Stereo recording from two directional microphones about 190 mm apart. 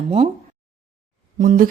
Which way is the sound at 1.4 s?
45° right (ahead or behind).